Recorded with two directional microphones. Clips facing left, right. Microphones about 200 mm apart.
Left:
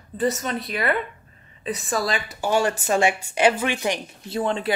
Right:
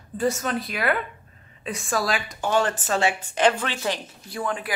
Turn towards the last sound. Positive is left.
turn(degrees=25)  # may be behind; listen again after turning